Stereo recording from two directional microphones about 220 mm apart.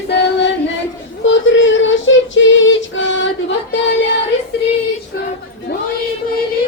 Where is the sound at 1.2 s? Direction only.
60° left (ahead or behind).